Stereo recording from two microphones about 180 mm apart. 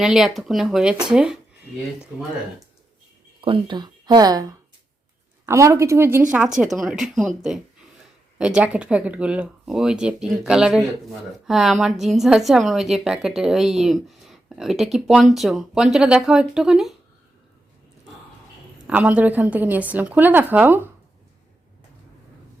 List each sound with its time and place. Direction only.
0.0 s a woman's voice: centre (ahead or behind)
3.4 s a woman's voice: 25° right (ahead or behind)
6.6 s a woman's voice: centre (ahead or behind)
18.9 s a woman's voice: 10° right (ahead or behind)